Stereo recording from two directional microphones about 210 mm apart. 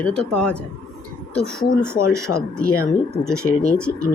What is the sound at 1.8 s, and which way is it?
Speech, 10° right (ahead or behind).